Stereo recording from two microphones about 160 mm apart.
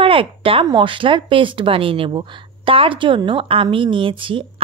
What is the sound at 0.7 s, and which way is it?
Speech, 30° right (ahead or behind).